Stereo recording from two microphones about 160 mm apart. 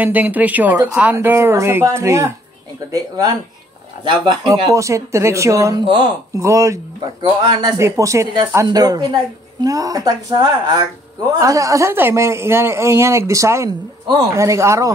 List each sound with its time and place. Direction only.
0.0 s speech: 10° right (ahead or behind)
4.5 s speech: 20° right (ahead or behind)